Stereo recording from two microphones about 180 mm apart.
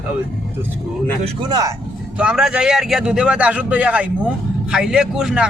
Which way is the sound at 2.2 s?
5° right (ahead or behind).